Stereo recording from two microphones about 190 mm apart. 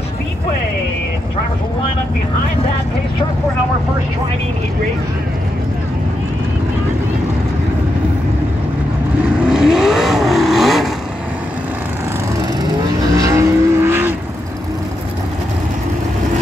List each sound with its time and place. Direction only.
9.5 s vehicle: 5° right (ahead or behind)
13.1 s vehicle: 15° right (ahead or behind)